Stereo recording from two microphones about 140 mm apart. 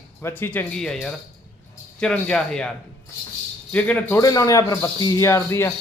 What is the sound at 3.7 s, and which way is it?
Speech, 10° left (ahead or behind).